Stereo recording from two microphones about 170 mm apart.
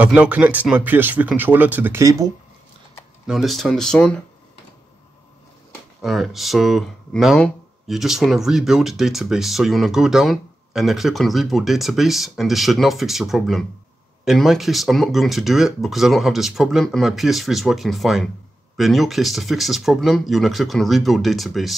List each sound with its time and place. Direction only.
0.0 s speech: 5° right (ahead or behind)
3.3 s speech: centre (ahead or behind)
6.0 s speech: centre (ahead or behind)